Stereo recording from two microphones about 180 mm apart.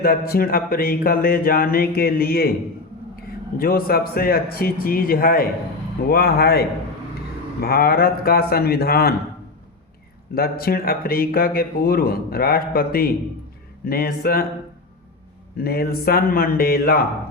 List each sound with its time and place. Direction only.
0.0 s speech: 55° left (ahead or behind)
3.6 s speech: 55° left (ahead or behind)
10.3 s speech: 55° left (ahead or behind)
15.5 s speech: 55° left (ahead or behind)